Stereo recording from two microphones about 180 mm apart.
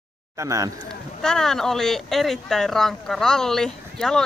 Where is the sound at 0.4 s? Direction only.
15° right (ahead or behind).